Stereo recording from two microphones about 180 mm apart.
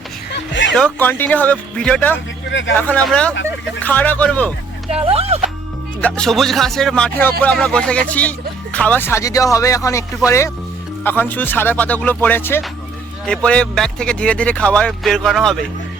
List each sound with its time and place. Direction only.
0.3 s music: 90° left
0.8 s speech: 10° left (ahead or behind)
2.5 s speech: 90° left
2.7 s speech: 5° left (ahead or behind)
4.9 s speech: 35° right (ahead or behind)
6.0 s speech: 5° left (ahead or behind)